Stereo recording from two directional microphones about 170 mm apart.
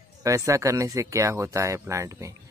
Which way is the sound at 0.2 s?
20° right (ahead or behind).